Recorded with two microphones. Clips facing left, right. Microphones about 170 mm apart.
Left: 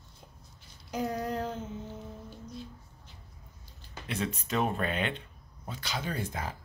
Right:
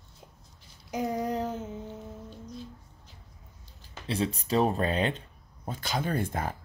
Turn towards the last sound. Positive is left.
turn(degrees=-50)  # may be behind; listen again after turning